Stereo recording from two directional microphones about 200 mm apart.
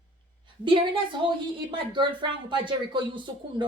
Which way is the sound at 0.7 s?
25° right (ahead or behind).